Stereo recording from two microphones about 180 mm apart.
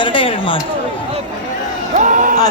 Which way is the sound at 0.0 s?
30° left (ahead or behind).